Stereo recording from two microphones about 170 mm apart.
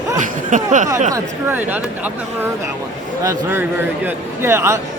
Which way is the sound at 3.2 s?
10° right (ahead or behind).